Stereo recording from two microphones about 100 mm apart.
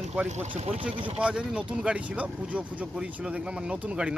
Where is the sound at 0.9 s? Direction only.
65° right (ahead or behind).